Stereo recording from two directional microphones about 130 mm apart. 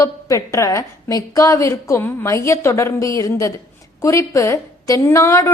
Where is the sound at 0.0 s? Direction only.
25° left (ahead or behind).